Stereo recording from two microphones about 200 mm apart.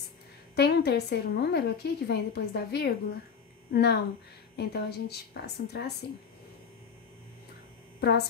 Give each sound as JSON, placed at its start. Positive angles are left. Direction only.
{"t": 0.6, "sound": "a woman's voice", "side_deg": 55}
{"t": 8.0, "sound": "a woman's voice", "side_deg": 55}